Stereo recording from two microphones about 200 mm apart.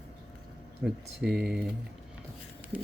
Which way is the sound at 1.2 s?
55° right (ahead or behind).